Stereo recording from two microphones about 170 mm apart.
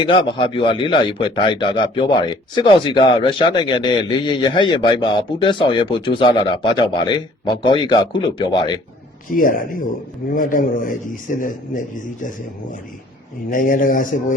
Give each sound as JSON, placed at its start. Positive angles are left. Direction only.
{"t": 0.1, "sound": "a man's voice", "side_deg": 30}
{"t": 9.3, "sound": "speech", "side_deg": 55}
{"t": 13.5, "sound": "speech", "side_deg": 55}